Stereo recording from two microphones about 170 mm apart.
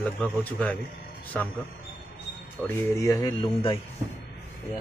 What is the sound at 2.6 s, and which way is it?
Speech, 15° left (ahead or behind).